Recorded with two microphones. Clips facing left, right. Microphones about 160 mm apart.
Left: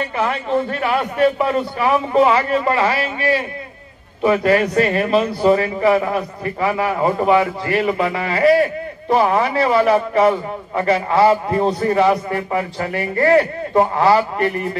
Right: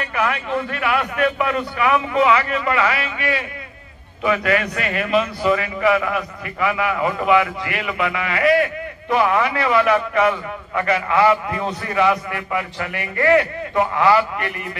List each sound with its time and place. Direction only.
0.1 s a man's voice: 30° left (ahead or behind)